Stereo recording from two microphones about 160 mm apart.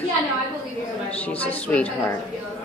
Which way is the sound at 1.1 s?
10° left (ahead or behind).